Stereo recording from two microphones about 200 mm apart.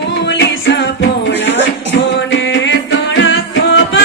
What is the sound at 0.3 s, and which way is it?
Music, 65° left (ahead or behind).